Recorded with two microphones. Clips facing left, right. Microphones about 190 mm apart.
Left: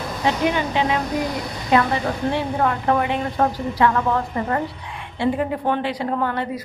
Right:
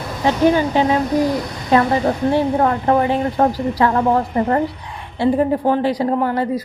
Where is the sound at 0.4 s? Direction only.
40° right (ahead or behind).